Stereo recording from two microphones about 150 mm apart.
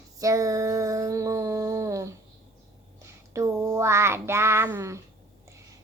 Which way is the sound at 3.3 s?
20° right (ahead or behind).